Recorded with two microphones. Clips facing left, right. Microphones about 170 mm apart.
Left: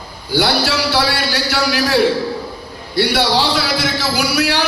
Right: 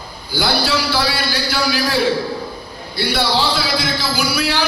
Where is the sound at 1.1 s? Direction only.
70° left (ahead or behind).